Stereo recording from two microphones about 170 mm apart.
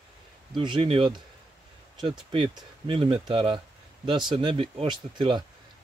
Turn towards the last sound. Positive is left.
turn(degrees=-25)  # may be behind; listen again after turning